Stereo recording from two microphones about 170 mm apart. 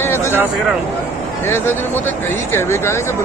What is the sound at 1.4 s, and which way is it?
Speech, 15° left (ahead or behind).